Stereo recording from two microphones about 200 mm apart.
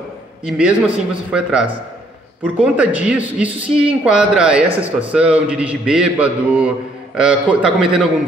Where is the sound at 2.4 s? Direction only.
5° right (ahead or behind).